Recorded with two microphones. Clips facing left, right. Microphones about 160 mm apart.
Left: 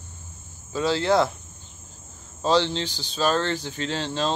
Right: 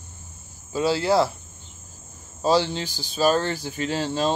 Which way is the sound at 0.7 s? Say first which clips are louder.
Right 1 dB; 10° right (ahead or behind).